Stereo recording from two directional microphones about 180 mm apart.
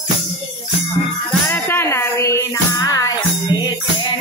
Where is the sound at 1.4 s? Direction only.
10° left (ahead or behind).